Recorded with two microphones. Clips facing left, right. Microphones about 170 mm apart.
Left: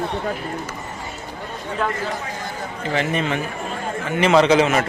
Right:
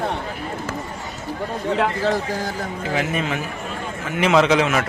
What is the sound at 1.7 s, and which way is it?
Speech, 90° right.